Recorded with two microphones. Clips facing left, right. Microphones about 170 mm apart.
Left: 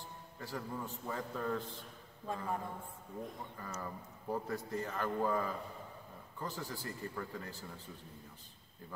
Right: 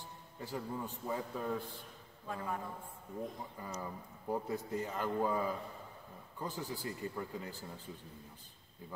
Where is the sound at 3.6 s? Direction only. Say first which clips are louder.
Right 1 dB; 15° right (ahead or behind).